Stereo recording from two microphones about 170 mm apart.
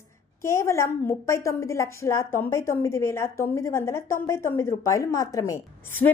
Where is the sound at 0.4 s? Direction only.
15° left (ahead or behind).